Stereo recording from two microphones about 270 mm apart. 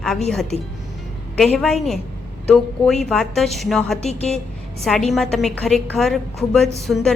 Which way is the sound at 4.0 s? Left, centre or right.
Left.